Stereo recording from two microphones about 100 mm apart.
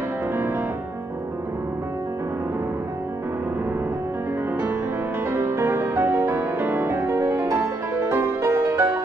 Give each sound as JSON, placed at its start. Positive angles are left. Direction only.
{"t": 5.3, "sound": "music", "side_deg": -25}